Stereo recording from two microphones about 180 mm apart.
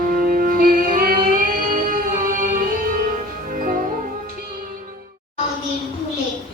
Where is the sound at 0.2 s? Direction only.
50° right (ahead or behind).